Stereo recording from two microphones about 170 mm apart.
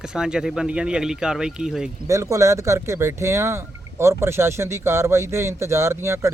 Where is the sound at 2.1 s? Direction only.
20° right (ahead or behind).